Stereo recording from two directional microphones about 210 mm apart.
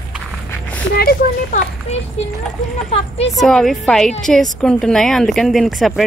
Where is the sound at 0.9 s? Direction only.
45° left (ahead or behind).